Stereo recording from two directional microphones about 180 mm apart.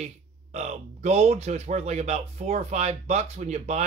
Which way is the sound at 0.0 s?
40° right (ahead or behind).